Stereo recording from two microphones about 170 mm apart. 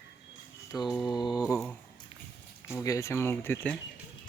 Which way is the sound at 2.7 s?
15° left (ahead or behind).